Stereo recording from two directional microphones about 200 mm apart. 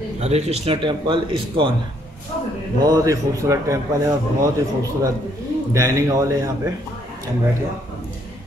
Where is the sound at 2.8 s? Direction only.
15° right (ahead or behind).